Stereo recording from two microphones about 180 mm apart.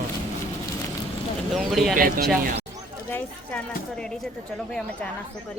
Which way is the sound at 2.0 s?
50° right (ahead or behind).